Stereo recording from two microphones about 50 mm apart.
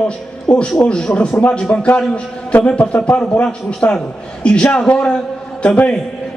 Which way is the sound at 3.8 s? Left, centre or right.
Left.